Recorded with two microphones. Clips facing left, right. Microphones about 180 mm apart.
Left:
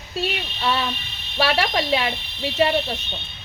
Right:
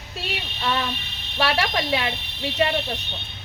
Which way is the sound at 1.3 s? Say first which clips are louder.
Left 2 dB; 25° left (ahead or behind).